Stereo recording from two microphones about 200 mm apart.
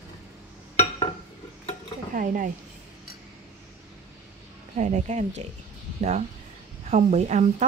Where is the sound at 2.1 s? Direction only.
40° right (ahead or behind).